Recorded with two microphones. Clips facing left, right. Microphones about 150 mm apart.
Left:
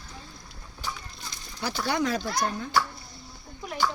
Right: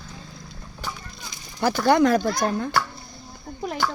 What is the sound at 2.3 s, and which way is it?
Speech, 75° right (ahead or behind).